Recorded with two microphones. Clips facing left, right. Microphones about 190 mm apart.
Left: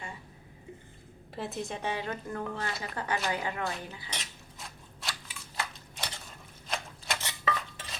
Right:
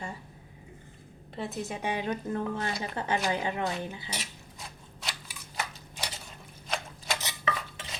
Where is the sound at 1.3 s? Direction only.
Centre (ahead or behind); by 4.0 s 20° right (ahead or behind).